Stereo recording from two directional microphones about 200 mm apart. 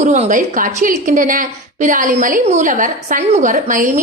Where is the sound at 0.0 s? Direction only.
35° right (ahead or behind).